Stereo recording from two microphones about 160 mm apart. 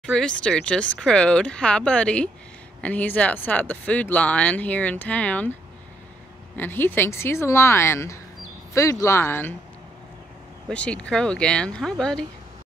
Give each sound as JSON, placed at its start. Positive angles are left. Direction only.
{"t": 0.0, "sound": "speech", "side_deg": 5}
{"t": 6.5, "sound": "speech", "side_deg": 10}
{"t": 10.7, "sound": "speech", "side_deg": 5}